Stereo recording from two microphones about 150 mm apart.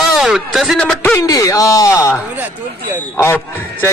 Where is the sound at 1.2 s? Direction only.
25° left (ahead or behind).